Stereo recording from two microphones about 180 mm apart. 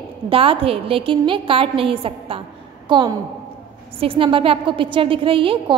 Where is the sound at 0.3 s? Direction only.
30° right (ahead or behind).